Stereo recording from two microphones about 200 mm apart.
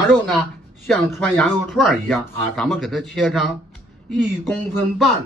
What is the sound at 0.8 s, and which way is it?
Speech, centre (ahead or behind).